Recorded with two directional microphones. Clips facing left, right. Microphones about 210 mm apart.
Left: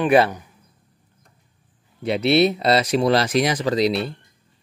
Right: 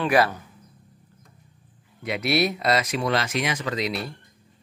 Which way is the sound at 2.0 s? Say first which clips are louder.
Left 6 dB; 30° left (ahead or behind).